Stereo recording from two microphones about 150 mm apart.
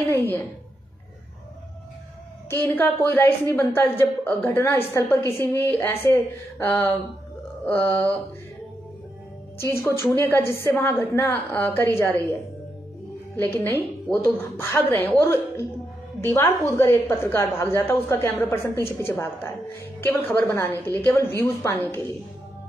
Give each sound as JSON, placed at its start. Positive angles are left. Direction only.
{"t": 0.1, "sound": "a woman's voice", "side_deg": 15}
{"t": 2.5, "sound": "a woman's voice", "side_deg": 15}
{"t": 9.7, "sound": "a woman's voice", "side_deg": 15}
{"t": 13.5, "sound": "a woman's voice", "side_deg": 15}